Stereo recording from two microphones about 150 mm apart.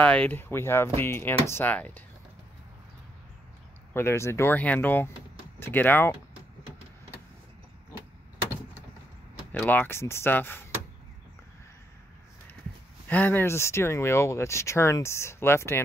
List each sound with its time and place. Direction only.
0.0 s speech: 10° left (ahead or behind)
3.9 s speech: 15° left (ahead or behind)
9.5 s speech: 10° left (ahead or behind)
13.1 s speech: 10° left (ahead or behind)